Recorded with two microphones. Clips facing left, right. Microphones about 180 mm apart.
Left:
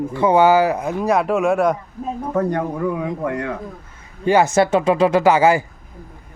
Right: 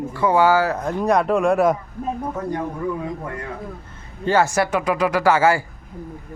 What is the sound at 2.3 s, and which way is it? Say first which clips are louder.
A man's voice: left 5 dB; 60° left (ahead or behind).